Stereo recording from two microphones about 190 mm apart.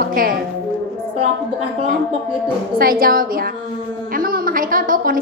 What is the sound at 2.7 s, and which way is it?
A woman's voice, 50° right (ahead or behind).